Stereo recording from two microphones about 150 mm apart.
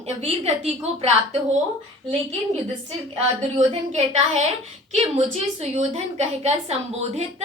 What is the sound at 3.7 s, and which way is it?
A woman's voice, 45° right (ahead or behind).